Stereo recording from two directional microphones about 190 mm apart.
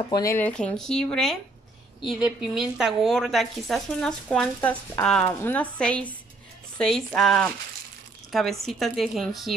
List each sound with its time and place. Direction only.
0.1 s a woman's voice: 15° left (ahead or behind)
4.6 s a woman's voice: 15° left (ahead or behind); by 9.5 s centre (ahead or behind)